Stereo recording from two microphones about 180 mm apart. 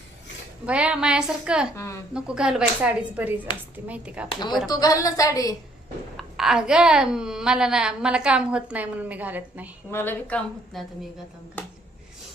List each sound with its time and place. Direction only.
0.6 s a woman's voice: 5° right (ahead or behind)
1.7 s a woman's voice: 15° left (ahead or behind)
2.1 s a woman's voice: 5° right (ahead or behind)
4.7 s a woman's voice: 20° left (ahead or behind)
6.1 s a woman's voice: centre (ahead or behind)
9.9 s a woman's voice: 10° left (ahead or behind)